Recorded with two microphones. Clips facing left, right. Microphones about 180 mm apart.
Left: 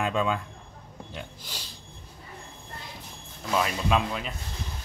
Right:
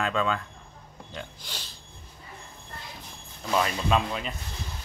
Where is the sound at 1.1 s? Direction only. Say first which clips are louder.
Right 2 dB; 5° left (ahead or behind).